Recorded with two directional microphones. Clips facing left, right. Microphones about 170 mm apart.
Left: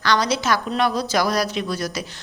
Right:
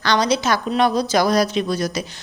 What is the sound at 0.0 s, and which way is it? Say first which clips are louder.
A woman's voice: right 2 dB; 20° right (ahead or behind).